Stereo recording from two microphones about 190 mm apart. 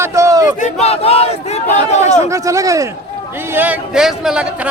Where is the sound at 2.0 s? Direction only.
15° right (ahead or behind).